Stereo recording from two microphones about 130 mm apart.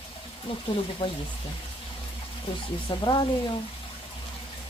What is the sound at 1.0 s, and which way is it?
Speech, 35° left (ahead or behind).